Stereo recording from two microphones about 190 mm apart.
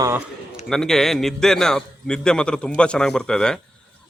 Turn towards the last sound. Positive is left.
turn(degrees=5)  # may be behind; listen again after turning